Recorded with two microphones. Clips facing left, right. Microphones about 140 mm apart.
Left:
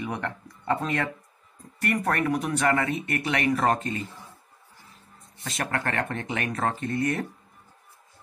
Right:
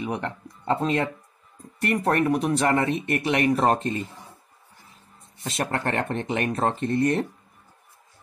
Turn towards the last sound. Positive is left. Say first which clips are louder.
# right 4 dB
turn(degrees=-30)  # may be behind; listen again after turning